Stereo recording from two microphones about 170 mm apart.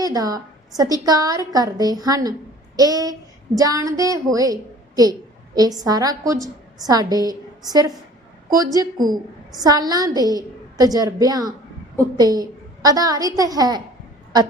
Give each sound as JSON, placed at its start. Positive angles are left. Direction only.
{"t": 0.0, "sound": "a woman's voice", "side_deg": -20}